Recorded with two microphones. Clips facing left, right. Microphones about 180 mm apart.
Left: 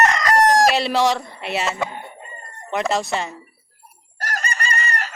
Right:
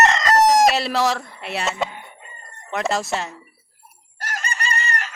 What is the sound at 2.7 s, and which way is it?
Speech, centre (ahead or behind).